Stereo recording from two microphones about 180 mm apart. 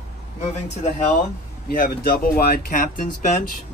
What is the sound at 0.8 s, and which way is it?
Speech, 40° left (ahead or behind).